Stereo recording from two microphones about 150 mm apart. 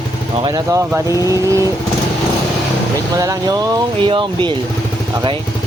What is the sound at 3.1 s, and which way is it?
Speech, 25° right (ahead or behind).